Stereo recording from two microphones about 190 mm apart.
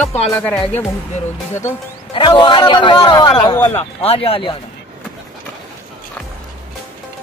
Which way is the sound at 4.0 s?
30° left (ahead or behind).